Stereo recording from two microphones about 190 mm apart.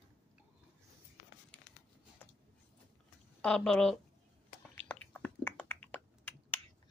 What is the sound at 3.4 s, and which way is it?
Speech, 5° left (ahead or behind).